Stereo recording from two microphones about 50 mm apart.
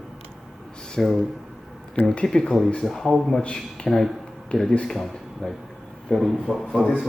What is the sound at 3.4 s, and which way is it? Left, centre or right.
Speech, centre.